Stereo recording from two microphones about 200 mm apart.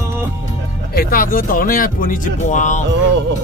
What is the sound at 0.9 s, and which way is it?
Speech, 45° left (ahead or behind).